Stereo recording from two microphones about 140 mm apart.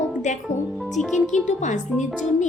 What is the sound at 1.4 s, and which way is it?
Speech, 60° left (ahead or behind).